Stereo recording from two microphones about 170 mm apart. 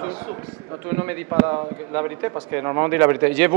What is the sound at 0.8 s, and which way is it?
A man's voice, 15° right (ahead or behind).